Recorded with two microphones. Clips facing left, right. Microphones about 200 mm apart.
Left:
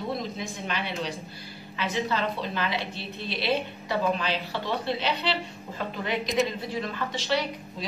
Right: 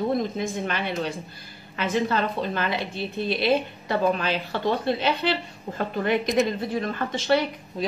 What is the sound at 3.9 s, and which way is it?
Speech, 50° right (ahead or behind).